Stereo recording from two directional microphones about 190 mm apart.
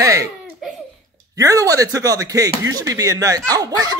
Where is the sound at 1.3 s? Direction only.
20° right (ahead or behind).